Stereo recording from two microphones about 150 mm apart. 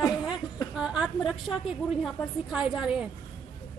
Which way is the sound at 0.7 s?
5° right (ahead or behind).